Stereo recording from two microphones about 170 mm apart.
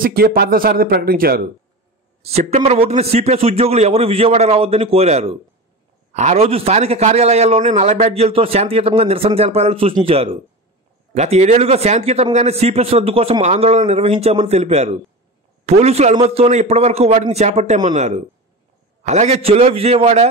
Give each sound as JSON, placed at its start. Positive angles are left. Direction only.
{"t": 0.0, "sound": "a man's voice", "side_deg": -60}
{"t": 2.2, "sound": "a man's voice", "side_deg": -40}